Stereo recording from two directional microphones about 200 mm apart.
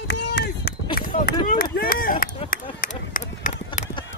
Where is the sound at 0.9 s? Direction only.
50° left (ahead or behind).